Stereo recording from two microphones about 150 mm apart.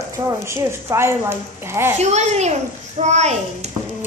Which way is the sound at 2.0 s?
50° right (ahead or behind).